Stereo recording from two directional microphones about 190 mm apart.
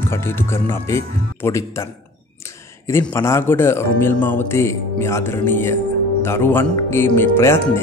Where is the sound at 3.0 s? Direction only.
15° left (ahead or behind).